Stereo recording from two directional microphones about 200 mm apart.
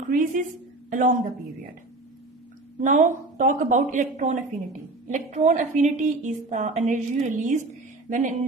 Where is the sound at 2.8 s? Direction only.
40° right (ahead or behind).